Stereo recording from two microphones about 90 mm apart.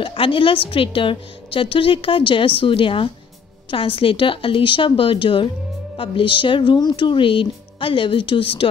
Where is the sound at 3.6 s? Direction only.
90° left.